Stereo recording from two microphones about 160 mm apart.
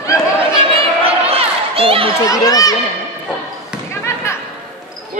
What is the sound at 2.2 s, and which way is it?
Speech, 20° left (ahead or behind).